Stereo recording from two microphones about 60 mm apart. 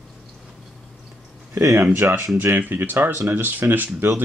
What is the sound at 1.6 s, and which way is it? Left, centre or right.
Speech, right.